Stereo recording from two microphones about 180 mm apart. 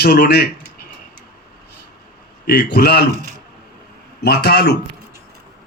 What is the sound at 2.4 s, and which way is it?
Speech, 65° left (ahead or behind).